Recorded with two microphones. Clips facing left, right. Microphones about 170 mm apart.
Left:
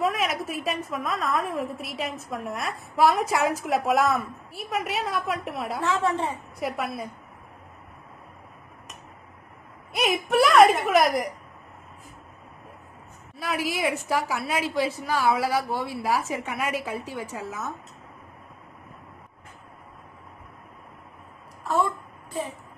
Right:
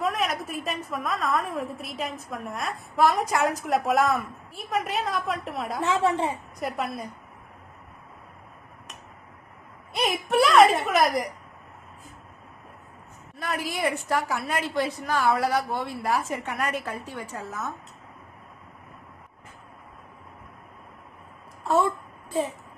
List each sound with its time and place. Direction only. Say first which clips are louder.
0.0 s a woman's voice: left 1 dB; centre (ahead or behind)
5.8 s a woman's voice: right 2 dB; 20° right (ahead or behind)
6.6 s a woman's voice: left 1 dB; centre (ahead or behind)
10.0 s a sound: left 1 dB; centre (ahead or behind)
13.4 s a woman's voice: left 1 dB; centre (ahead or behind)